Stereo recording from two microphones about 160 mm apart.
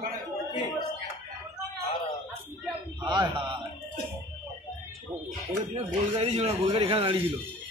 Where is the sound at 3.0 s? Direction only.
25° right (ahead or behind).